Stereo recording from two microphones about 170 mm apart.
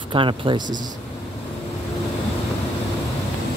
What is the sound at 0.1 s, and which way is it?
Speech, 30° right (ahead or behind).